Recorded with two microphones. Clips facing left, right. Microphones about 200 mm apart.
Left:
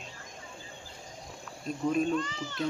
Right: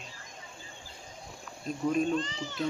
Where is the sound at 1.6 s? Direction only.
Centre (ahead or behind).